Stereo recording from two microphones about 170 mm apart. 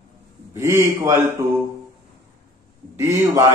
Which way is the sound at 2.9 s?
15° right (ahead or behind).